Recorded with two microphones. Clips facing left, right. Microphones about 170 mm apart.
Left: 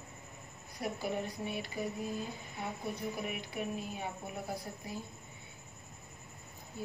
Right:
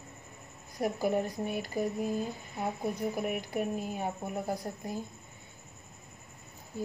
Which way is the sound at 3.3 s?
50° right (ahead or behind).